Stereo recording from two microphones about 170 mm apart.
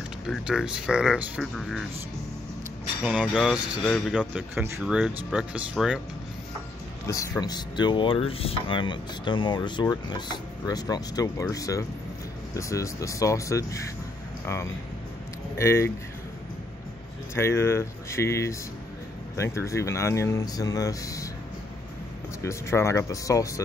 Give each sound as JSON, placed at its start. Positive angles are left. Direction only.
{"t": 0.3, "sound": "speech", "side_deg": -5}
{"t": 3.1, "sound": "speech", "side_deg": -5}
{"t": 7.1, "sound": "speech", "side_deg": 20}
{"t": 17.4, "sound": "speech", "side_deg": 15}
{"t": 22.4, "sound": "speech", "side_deg": 15}